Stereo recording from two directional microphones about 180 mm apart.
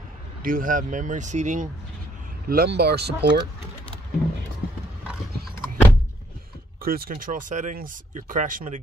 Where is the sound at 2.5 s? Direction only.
60° right (ahead or behind).